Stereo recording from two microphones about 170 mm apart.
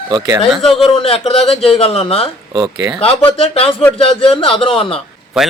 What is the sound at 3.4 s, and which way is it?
A man's voice, 35° left (ahead or behind).